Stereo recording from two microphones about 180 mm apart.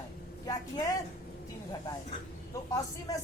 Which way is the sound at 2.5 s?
20° left (ahead or behind).